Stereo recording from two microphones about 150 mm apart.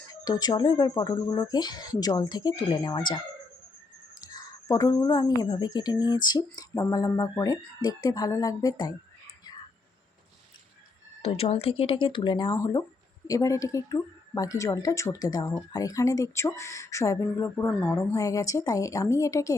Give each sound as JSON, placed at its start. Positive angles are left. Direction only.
{"t": 0.1, "sound": "a woman's voice", "side_deg": 25}
{"t": 4.2, "sound": "a woman's voice", "side_deg": 25}
{"t": 11.2, "sound": "speech", "side_deg": 45}
{"t": 12.5, "sound": "a woman's voice", "side_deg": 20}